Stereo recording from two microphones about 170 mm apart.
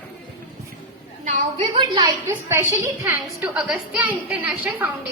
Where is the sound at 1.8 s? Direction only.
30° right (ahead or behind).